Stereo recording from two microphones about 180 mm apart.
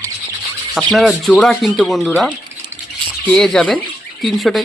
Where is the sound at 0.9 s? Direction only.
Centre (ahead or behind).